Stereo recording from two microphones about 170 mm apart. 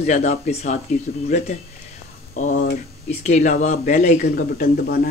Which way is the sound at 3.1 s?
40° left (ahead or behind).